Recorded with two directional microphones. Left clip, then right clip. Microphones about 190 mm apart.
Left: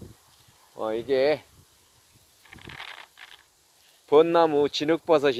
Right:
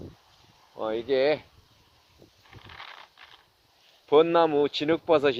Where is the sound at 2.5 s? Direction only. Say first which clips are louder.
Left 4 dB; 20° left (ahead or behind).